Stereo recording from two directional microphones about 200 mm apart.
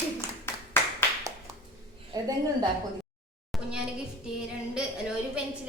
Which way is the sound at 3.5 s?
Centre (ahead or behind).